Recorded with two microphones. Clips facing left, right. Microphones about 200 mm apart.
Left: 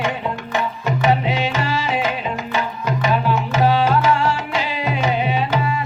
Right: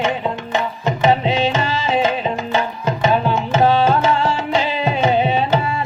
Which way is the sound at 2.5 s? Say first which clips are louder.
Right 3 dB; 25° right (ahead or behind).